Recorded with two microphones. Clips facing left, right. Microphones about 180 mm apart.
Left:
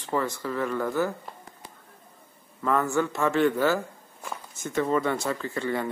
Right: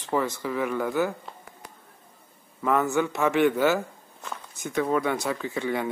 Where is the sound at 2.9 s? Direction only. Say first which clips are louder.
Right 1 dB; 15° right (ahead or behind).